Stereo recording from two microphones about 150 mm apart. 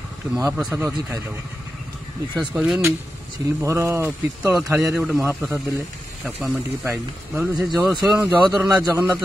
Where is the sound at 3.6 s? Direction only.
20° right (ahead or behind).